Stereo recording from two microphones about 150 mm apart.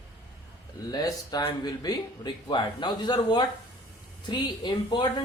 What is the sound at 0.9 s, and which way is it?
Speech, 25° left (ahead or behind).